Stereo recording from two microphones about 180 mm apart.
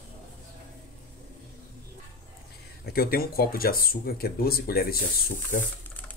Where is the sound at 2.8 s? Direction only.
55° left (ahead or behind).